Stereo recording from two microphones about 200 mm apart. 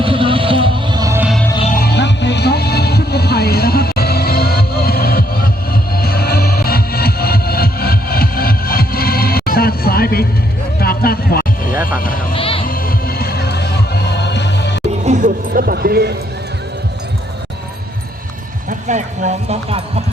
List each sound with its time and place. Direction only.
0.0 s music: 25° right (ahead or behind)
1.7 s music: 55° left (ahead or behind)
10.8 s vehicle: 50° left (ahead or behind)
12.3 s music: 25° left (ahead or behind)
12.6 s music: 45° left (ahead or behind)
15.0 s a sound: 40° right (ahead or behind)
18.7 s clip-clop: 35° right (ahead or behind)